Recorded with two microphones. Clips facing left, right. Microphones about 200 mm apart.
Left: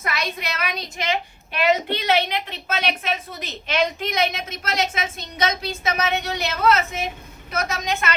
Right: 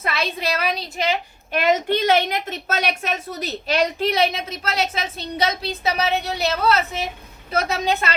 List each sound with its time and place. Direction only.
0.0 s a woman's voice: 30° right (ahead or behind)
1.5 s a woman's voice: 50° right (ahead or behind); by 8.1 s 30° right (ahead or behind)